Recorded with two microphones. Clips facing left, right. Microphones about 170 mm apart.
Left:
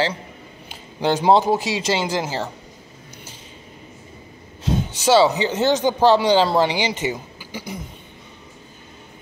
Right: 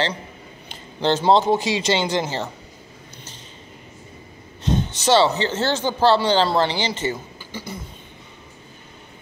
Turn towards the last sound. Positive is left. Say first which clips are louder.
# left 1 dB
turn(degrees=10)  # may be behind; listen again after turning